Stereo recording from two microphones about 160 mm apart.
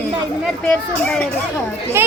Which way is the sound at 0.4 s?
5° left (ahead or behind).